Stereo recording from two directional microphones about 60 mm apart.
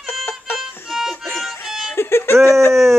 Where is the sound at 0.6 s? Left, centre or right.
Centre.